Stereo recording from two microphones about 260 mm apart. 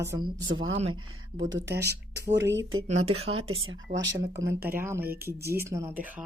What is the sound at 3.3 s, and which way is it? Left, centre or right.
Speech, right.